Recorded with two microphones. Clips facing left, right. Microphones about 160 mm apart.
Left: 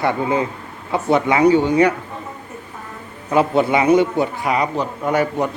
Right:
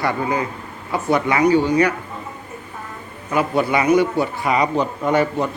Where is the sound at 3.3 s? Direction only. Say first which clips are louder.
Left 3 dB; 25° left (ahead or behind).